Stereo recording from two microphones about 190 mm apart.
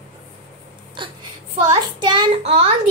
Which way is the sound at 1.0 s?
25° right (ahead or behind).